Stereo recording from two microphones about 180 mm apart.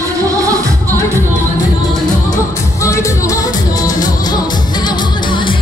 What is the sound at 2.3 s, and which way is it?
Music, 15° left (ahead or behind).